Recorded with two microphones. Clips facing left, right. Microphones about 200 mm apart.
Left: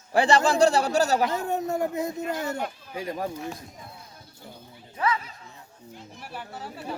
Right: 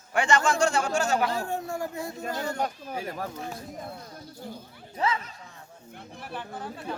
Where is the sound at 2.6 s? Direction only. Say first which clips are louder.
Right 2 dB; 40° right (ahead or behind).